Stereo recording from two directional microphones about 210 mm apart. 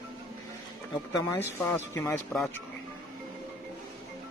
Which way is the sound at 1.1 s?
10° left (ahead or behind).